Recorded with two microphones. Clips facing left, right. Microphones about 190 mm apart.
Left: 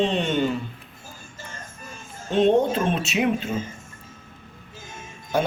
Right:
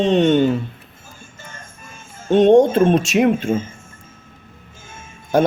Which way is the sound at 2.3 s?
80° right.